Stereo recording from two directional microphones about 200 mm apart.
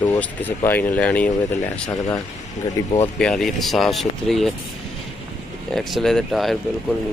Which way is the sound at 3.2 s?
Centre (ahead or behind).